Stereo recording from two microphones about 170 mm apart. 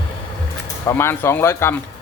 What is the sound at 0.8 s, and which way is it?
Speech, 15° left (ahead or behind).